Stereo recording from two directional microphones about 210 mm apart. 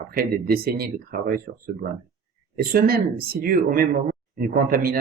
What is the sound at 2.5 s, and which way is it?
Speech, 45° right (ahead or behind).